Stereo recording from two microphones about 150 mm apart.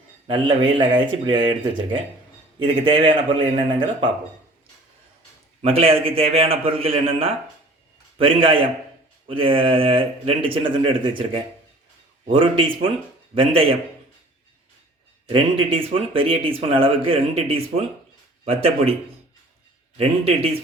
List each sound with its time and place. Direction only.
0.3 s speech: 35° right (ahead or behind)
5.6 s speech: 40° right (ahead or behind)
15.3 s speech: 35° right (ahead or behind)
20.0 s speech: 40° right (ahead or behind)